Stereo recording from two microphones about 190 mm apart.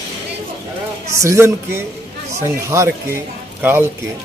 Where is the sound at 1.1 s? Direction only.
15° right (ahead or behind).